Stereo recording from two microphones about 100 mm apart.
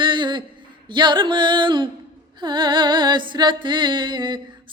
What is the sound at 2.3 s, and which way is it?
Music, 50° right (ahead or behind).